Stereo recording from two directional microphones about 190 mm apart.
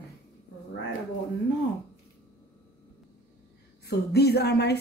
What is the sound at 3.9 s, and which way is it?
Speech, 60° left (ahead or behind).